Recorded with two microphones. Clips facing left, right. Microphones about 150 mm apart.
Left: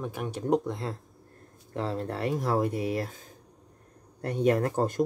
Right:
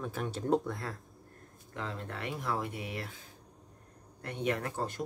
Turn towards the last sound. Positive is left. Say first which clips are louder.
# left 9 dB
turn(degrees=45)  # may be behind; listen again after turning